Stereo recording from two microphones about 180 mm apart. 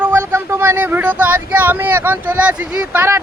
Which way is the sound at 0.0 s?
15° right (ahead or behind).